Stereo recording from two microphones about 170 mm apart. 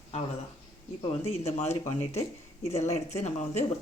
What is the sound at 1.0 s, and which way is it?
Speech, 35° left (ahead or behind).